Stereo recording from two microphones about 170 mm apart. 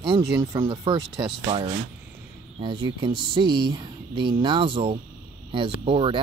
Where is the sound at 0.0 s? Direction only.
30° right (ahead or behind).